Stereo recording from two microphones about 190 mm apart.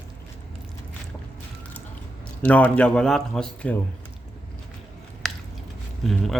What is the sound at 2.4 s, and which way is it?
Speech, 10° left (ahead or behind).